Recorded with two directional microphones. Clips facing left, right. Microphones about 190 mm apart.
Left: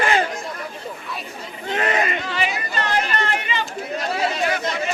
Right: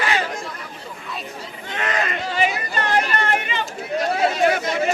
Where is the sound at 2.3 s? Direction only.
45° right (ahead or behind).